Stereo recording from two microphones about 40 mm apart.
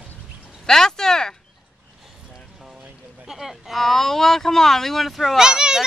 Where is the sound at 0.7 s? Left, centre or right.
Centre.